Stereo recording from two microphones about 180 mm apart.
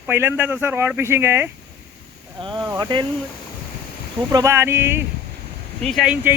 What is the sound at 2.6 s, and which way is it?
Speech, 20° right (ahead or behind).